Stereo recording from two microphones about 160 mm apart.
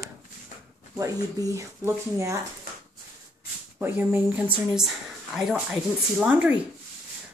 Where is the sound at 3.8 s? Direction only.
15° right (ahead or behind).